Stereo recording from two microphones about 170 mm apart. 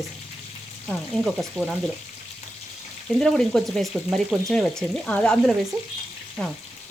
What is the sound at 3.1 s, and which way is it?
Speech, centre (ahead or behind).